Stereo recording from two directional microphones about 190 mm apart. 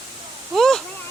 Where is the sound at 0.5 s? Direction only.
Centre (ahead or behind).